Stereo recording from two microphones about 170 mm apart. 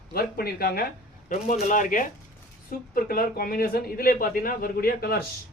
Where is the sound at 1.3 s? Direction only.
45° left (ahead or behind); by 5.2 s 65° left (ahead or behind).